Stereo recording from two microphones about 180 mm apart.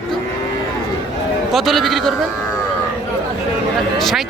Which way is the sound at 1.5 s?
Centre (ahead or behind).